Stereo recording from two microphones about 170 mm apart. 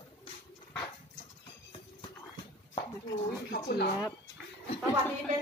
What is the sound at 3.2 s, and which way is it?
Speech, 75° left (ahead or behind).